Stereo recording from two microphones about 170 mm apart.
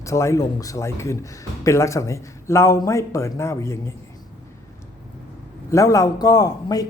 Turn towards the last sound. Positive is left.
turn(degrees=20)  # may be behind; listen again after turning